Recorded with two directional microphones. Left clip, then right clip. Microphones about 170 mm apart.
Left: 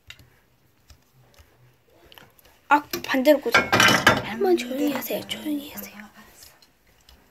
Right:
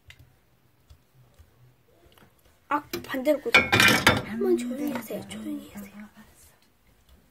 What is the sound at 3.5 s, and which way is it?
Speech, 60° right (ahead or behind).